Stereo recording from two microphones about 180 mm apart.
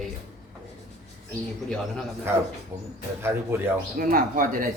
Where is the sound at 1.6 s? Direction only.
5° left (ahead or behind).